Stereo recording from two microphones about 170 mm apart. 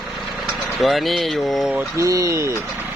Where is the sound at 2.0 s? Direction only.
20° right (ahead or behind).